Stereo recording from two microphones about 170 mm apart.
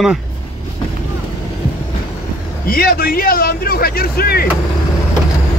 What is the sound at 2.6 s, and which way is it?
Speech, 60° left (ahead or behind).